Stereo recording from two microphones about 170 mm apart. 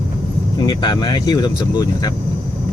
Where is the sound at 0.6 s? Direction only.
25° left (ahead or behind).